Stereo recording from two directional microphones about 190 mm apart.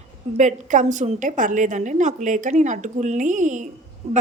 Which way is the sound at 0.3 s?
40° right (ahead or behind).